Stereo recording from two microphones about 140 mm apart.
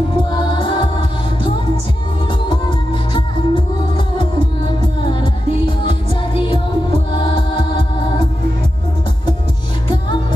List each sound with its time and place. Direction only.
0.2 s music: 35° left (ahead or behind)
5.0 s music: 35° left (ahead or behind)
9.8 s music: 35° left (ahead or behind)